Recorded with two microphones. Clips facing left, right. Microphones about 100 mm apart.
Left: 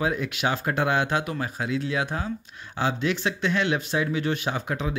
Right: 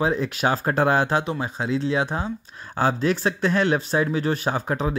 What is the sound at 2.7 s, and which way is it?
Speech, 40° right (ahead or behind).